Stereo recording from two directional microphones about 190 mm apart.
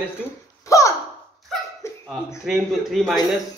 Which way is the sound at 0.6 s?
15° left (ahead or behind).